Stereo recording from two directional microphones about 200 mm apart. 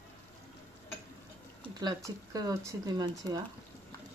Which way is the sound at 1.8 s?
20° right (ahead or behind).